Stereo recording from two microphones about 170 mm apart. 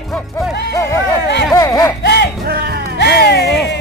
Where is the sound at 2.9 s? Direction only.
75° left (ahead or behind).